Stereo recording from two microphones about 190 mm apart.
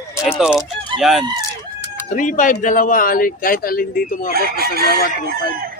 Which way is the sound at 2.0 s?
40° left (ahead or behind).